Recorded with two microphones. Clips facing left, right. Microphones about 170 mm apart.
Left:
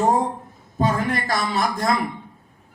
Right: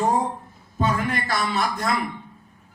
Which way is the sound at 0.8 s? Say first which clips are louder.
Left 2 dB; 40° left (ahead or behind).